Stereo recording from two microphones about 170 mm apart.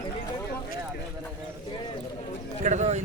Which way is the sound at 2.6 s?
45° right (ahead or behind).